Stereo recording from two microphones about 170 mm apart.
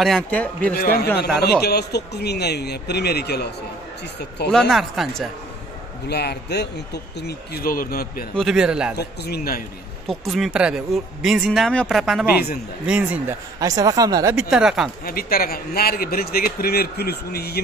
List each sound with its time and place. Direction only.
0.0 s a man's voice: 5° left (ahead or behind)
0.7 s a man's voice: 60° left (ahead or behind)
1.1 s a man's voice: 70° left (ahead or behind)
4.5 s speech: centre (ahead or behind)
6.0 s a man's voice: 75° left (ahead or behind); by 8.3 s 60° left (ahead or behind)
8.4 s speech: 5° right (ahead or behind)
8.9 s a man's voice: 70° left (ahead or behind)
10.0 s speech: centre (ahead or behind)
13.6 s speech: 20° right (ahead or behind)
14.3 s speech: 5° right (ahead or behind)
15.0 s a man's voice: 60° left (ahead or behind)